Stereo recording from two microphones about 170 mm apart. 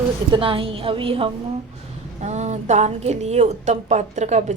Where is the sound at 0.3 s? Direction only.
30° right (ahead or behind).